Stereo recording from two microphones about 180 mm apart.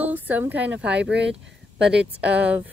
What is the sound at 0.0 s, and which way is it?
A woman's voice, 10° right (ahead or behind).